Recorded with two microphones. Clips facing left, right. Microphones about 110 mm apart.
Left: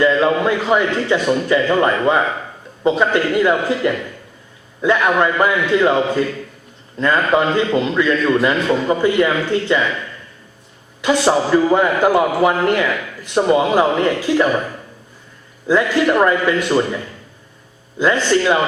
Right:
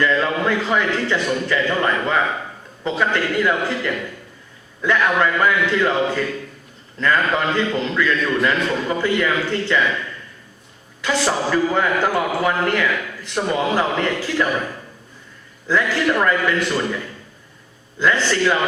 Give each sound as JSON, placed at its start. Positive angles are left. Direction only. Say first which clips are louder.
{"t": 0.0, "sound": "a man's voice", "louder": "left 5 dB", "side_deg": 20}
{"t": 11.0, "sound": "a man's voice", "louder": "left 5 dB", "side_deg": 20}
{"t": 15.6, "sound": "a man's voice", "louder": "left 4 dB", "side_deg": 20}
{"t": 18.0, "sound": "a man's voice", "louder": "left 3 dB", "side_deg": 20}